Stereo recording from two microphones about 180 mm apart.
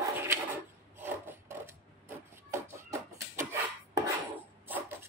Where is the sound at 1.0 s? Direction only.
10° right (ahead or behind).